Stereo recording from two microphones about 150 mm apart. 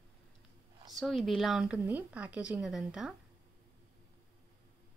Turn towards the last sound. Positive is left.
turn(degrees=-5)  # may be behind; listen again after turning